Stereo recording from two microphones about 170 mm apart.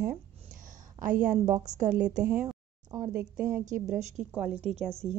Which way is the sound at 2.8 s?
25° right (ahead or behind).